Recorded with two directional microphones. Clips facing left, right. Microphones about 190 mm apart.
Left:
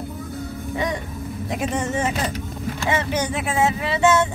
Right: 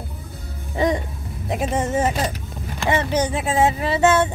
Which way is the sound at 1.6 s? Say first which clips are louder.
Right 3 dB; 40° right (ahead or behind).